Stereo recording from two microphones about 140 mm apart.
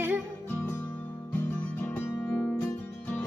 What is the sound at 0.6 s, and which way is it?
Music, 15° left (ahead or behind).